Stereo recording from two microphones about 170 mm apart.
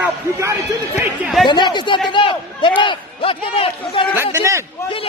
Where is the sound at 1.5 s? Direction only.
25° left (ahead or behind).